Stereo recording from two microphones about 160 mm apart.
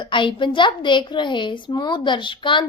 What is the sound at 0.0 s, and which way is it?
A woman's voice, 30° left (ahead or behind).